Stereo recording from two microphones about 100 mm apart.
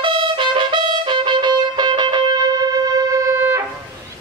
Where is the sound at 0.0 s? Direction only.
55° right (ahead or behind).